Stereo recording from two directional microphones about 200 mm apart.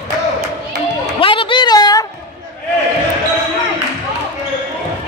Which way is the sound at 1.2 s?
25° left (ahead or behind).